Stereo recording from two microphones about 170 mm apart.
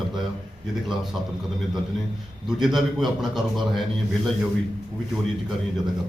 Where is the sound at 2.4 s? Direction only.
Centre (ahead or behind).